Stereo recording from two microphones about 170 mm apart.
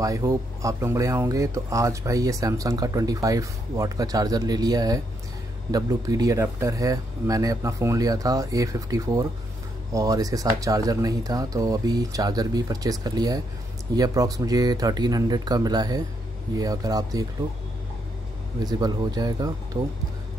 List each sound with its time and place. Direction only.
0.0 s speech: 20° right (ahead or behind)
18.6 s speech: 25° right (ahead or behind)